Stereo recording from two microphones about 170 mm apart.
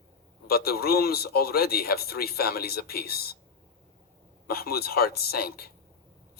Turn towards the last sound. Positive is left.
turn(degrees=65)  # may be behind; listen again after turning